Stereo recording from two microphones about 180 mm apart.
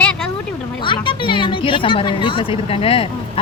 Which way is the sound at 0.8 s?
25° left (ahead or behind).